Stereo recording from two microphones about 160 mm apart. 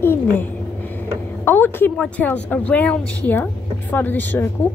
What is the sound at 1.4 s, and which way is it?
A woman's voice, 10° left (ahead or behind).